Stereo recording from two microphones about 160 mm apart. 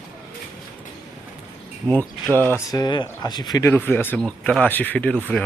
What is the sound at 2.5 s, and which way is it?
Speech, 25° left (ahead or behind).